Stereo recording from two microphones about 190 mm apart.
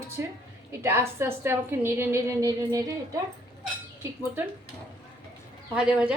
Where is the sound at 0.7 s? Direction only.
15° right (ahead or behind).